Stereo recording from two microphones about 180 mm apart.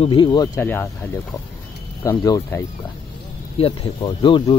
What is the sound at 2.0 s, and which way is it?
Speech, 20° left (ahead or behind).